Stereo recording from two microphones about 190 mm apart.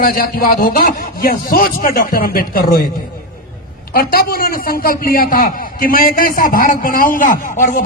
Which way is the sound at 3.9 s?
50° left (ahead or behind).